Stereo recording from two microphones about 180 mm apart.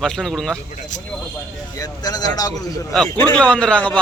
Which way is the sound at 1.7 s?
20° left (ahead or behind).